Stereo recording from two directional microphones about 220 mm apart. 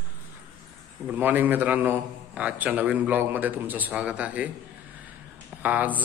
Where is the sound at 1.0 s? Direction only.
10° right (ahead or behind).